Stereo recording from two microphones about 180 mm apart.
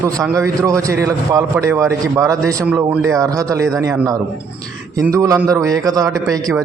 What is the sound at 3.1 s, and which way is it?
A man's voice, 20° right (ahead or behind).